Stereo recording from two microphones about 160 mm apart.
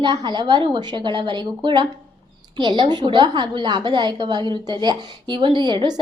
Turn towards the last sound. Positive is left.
turn(degrees=-30)  # may be behind; listen again after turning